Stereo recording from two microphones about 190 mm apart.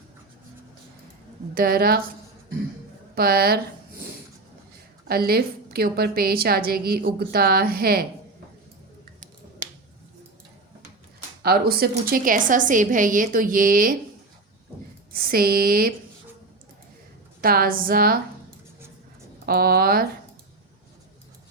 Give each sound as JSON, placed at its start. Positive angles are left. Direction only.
{"t": 1.5, "sound": "a woman's voice", "side_deg": -50}
{"t": 3.2, "sound": "a woman's voice", "side_deg": -55}
{"t": 5.0, "sound": "a woman's voice", "side_deg": -55}
{"t": 11.4, "sound": "a woman's voice", "side_deg": -55}
{"t": 15.1, "sound": "a woman's voice", "side_deg": -50}
{"t": 17.4, "sound": "a woman's voice", "side_deg": -50}
{"t": 19.5, "sound": "a woman's voice", "side_deg": -50}